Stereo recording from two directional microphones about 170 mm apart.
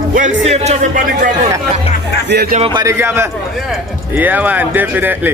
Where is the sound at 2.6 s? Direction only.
25° right (ahead or behind).